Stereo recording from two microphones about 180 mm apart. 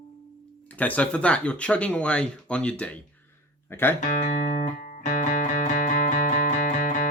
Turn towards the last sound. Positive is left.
turn(degrees=45)  # may be behind; listen again after turning